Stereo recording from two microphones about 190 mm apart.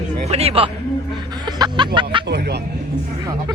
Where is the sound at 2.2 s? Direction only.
60° right (ahead or behind).